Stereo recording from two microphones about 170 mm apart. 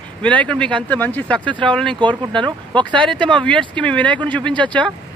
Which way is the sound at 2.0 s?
25° right (ahead or behind).